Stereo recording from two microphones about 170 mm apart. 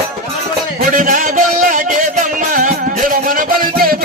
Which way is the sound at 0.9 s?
50° right (ahead or behind).